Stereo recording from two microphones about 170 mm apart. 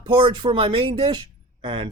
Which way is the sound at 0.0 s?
30° right (ahead or behind).